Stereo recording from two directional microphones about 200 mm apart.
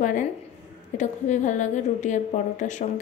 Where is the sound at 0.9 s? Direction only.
40° left (ahead or behind).